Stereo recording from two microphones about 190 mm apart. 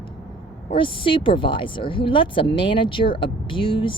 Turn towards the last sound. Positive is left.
turn(degrees=25)  # may be behind; listen again after turning